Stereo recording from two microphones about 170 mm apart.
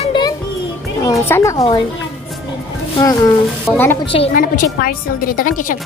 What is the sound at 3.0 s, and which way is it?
A woman's voice, 20° left (ahead or behind).